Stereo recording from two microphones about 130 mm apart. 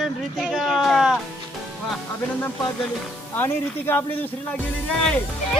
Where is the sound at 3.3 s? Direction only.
15° left (ahead or behind).